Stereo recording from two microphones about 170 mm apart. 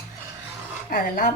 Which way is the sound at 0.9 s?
55° left (ahead or behind).